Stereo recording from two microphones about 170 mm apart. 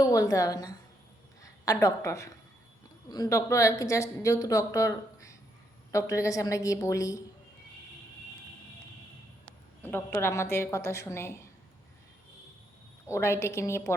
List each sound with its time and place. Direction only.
0.0 s a woman's voice: 20° left (ahead or behind)
9.8 s a woman's voice: 10° left (ahead or behind)
13.1 s a woman's voice: 15° left (ahead or behind)